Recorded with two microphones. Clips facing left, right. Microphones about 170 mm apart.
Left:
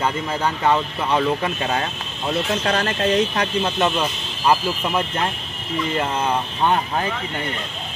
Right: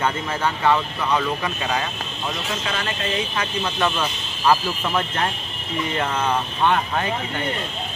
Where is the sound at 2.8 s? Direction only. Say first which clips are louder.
Left 7 dB; 80° left.